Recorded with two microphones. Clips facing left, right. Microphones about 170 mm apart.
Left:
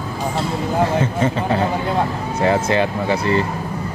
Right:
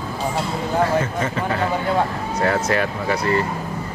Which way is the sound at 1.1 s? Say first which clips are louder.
Left 4 dB; 30° left (ahead or behind).